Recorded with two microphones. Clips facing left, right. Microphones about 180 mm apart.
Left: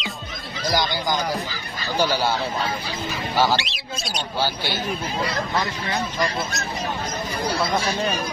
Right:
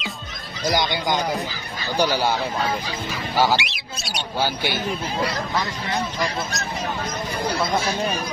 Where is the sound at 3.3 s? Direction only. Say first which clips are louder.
Right 1 dB; 15° right (ahead or behind).